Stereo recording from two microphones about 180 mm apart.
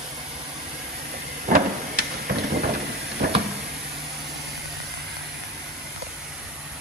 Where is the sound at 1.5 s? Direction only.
60° right (ahead or behind).